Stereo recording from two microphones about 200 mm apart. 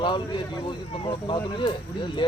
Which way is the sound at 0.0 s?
25° left (ahead or behind).